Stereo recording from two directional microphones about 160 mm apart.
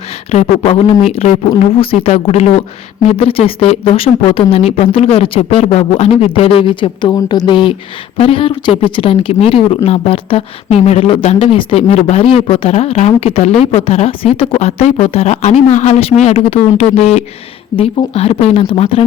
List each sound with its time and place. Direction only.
0.3 s speech: 40° left (ahead or behind)